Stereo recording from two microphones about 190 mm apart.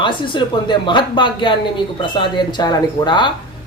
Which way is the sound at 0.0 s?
25° left (ahead or behind).